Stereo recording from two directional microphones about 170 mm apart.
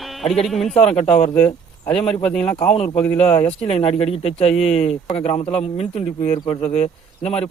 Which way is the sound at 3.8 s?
35° left (ahead or behind).